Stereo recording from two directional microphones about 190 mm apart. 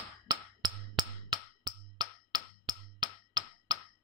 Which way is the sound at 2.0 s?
20° right (ahead or behind).